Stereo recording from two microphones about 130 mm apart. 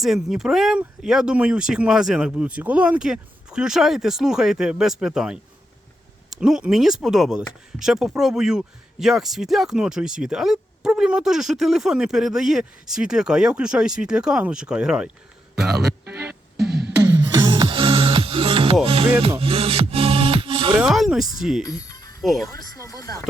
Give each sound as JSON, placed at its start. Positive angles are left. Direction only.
{"t": 0.0, "sound": "speech", "side_deg": 0}
{"t": 16.1, "sound": "music", "side_deg": -15}
{"t": 16.6, "sound": "beatboxing", "side_deg": -5}
{"t": 17.0, "sound": "music", "side_deg": -35}
{"t": 19.2, "sound": "speech", "side_deg": -45}
{"t": 20.7, "sound": "speech", "side_deg": -5}
{"t": 21.7, "sound": "music", "side_deg": 30}
{"t": 22.2, "sound": "speech", "side_deg": 0}
{"t": 22.4, "sound": "speech", "side_deg": 25}